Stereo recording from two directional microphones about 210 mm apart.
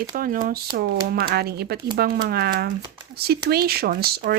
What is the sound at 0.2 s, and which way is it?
Speech, 40° right (ahead or behind).